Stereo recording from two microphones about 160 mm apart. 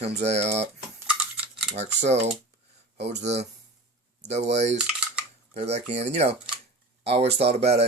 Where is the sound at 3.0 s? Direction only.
90° right.